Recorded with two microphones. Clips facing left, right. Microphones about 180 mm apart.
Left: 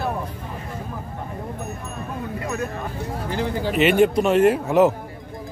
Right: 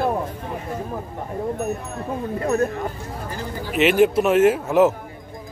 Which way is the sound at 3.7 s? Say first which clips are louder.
Right 1 dB; centre (ahead or behind).